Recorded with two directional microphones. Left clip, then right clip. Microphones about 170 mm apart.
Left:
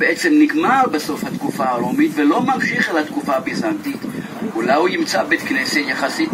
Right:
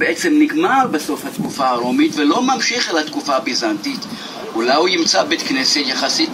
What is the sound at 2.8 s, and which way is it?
Speech, 30° left (ahead or behind).